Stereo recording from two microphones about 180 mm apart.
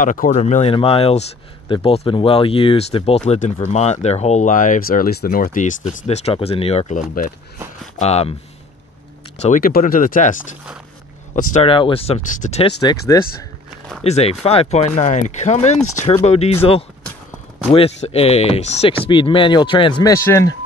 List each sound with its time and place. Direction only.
0.0 s speech: 45° left (ahead or behind)
9.4 s speech: 50° left (ahead or behind)
11.3 s speech: 45° left (ahead or behind)
11.6 s speech: 30° left (ahead or behind)
13.1 s speech: 20° left (ahead or behind)
14.0 s speech: 35° left (ahead or behind)
17.6 s speech: 35° left (ahead or behind); by 20.5 s 15° left (ahead or behind)